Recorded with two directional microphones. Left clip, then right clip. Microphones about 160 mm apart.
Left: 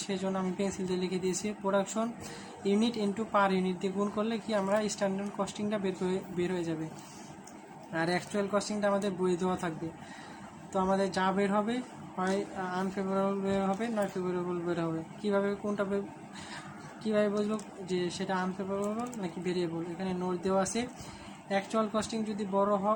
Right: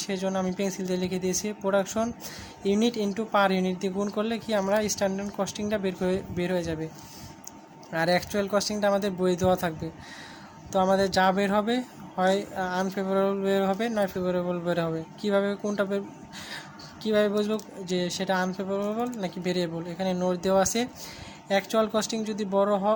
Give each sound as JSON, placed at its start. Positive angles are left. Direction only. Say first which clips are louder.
{"t": 0.1, "sound": "speech", "louder": "right 5 dB", "side_deg": -40}
{"t": 7.9, "sound": "a woman's voice", "louder": "right 7 dB", "side_deg": -45}
{"t": 17.0, "sound": "a woman's voice", "louder": "right 5 dB", "side_deg": -50}